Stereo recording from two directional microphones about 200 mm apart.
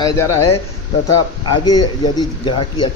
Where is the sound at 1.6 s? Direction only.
20° left (ahead or behind).